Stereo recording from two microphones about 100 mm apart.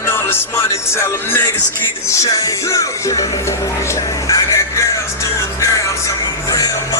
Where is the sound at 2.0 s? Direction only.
35° left (ahead or behind).